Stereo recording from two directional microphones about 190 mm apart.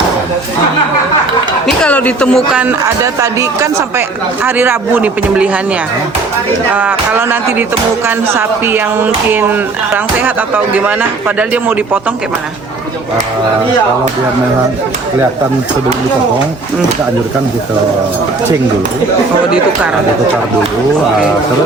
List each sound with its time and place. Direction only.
1.8 s speech: 5° left (ahead or behind)
6.7 s speech: 10° right (ahead or behind)